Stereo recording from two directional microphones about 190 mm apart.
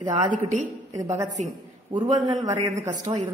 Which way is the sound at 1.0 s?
15° right (ahead or behind).